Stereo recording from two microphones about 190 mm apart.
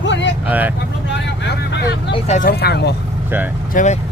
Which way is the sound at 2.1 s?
35° left (ahead or behind).